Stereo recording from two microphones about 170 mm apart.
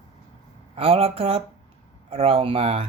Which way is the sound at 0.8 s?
35° right (ahead or behind).